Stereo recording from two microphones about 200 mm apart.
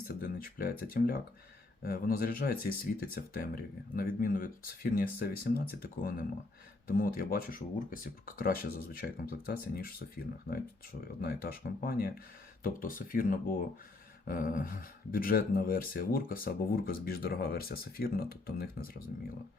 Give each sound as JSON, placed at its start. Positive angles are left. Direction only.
{"t": 0.1, "sound": "speech", "side_deg": 50}
{"t": 11.2, "sound": "speech", "side_deg": 50}